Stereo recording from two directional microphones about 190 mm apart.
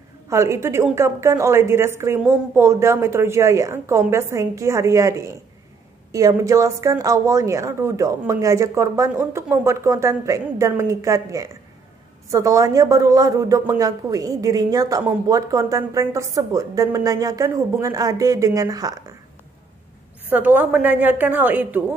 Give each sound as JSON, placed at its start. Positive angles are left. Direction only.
{"t": 0.3, "sound": "speech", "side_deg": -15}
{"t": 20.2, "sound": "speech", "side_deg": -10}